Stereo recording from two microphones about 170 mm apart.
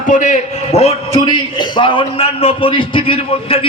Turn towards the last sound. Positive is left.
turn(degrees=35)  # may be behind; listen again after turning